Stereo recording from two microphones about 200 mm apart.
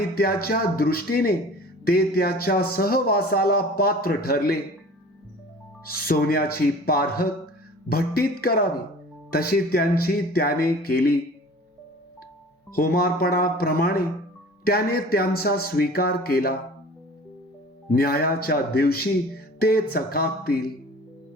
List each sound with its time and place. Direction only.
0.1 s speech: 50° left (ahead or behind)
6.0 s speech: 50° left (ahead or behind)
12.7 s speech: 50° left (ahead or behind)
17.9 s speech: 50° left (ahead or behind)